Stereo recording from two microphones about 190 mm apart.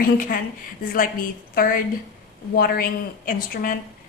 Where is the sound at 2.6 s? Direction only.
50° left (ahead or behind).